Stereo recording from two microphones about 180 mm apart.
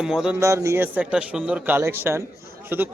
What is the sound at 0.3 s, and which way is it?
Speech, 15° right (ahead or behind).